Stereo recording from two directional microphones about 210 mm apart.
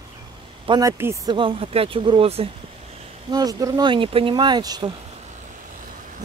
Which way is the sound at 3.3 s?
15° right (ahead or behind).